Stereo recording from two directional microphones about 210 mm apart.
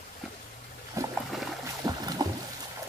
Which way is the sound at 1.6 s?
15° right (ahead or behind).